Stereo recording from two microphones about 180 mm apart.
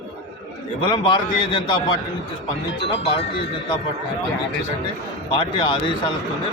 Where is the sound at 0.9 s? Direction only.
25° left (ahead or behind).